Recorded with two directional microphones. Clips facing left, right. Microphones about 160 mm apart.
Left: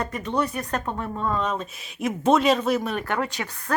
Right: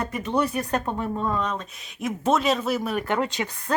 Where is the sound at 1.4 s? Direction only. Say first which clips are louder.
Left 1 dB; 5° left (ahead or behind).